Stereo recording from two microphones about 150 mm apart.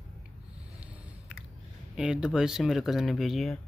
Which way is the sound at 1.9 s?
5° right (ahead or behind).